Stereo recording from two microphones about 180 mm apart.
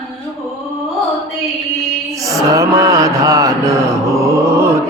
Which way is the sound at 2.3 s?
20° right (ahead or behind).